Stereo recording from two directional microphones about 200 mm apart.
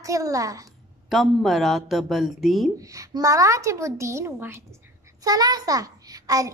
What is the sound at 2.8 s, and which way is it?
A child's voice, 15° right (ahead or behind).